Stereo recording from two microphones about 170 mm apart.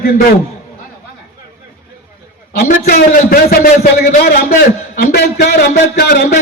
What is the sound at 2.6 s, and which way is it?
A man's voice, 65° left (ahead or behind).